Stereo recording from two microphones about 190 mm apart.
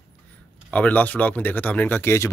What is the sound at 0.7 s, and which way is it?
Speech, 10° left (ahead or behind).